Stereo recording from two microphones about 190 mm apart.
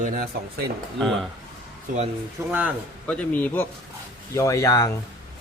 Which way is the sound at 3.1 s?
5° left (ahead or behind).